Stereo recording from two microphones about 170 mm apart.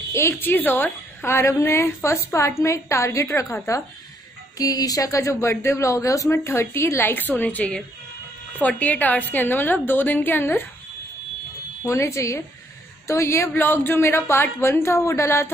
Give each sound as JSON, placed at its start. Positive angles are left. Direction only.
{"t": 0.1, "sound": "speech", "side_deg": 15}
{"t": 11.8, "sound": "speech", "side_deg": 15}